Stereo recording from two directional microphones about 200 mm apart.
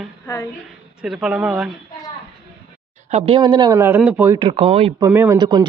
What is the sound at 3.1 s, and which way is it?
Speech, 30° right (ahead or behind).